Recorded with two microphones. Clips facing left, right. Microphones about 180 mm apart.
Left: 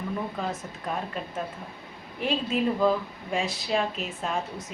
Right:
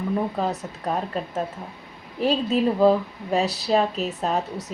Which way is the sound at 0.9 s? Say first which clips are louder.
Right 6 dB; 40° right (ahead or behind).